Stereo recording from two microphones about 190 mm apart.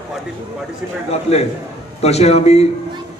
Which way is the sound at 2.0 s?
35° left (ahead or behind).